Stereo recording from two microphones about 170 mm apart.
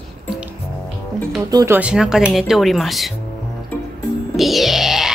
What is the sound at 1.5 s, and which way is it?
Speech, 20° right (ahead or behind).